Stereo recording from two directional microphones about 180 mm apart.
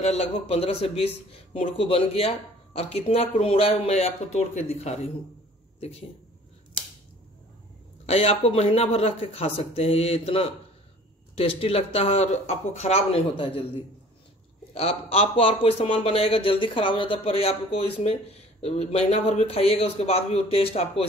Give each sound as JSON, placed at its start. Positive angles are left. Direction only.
{"t": 0.0, "sound": "a man's voice", "side_deg": 35}
{"t": 8.1, "sound": "a man's voice", "side_deg": 35}
{"t": 14.7, "sound": "a man's voice", "side_deg": 35}